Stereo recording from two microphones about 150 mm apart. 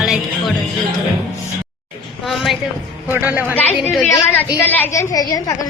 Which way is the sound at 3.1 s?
15° right (ahead or behind).